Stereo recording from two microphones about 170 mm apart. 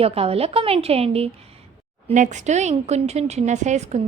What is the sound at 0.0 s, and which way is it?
A woman's voice, 35° right (ahead or behind).